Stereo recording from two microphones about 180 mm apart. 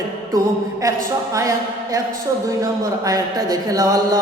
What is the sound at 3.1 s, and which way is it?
Speech, 20° right (ahead or behind).